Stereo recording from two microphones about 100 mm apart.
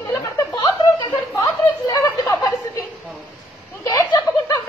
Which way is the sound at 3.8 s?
35° left (ahead or behind).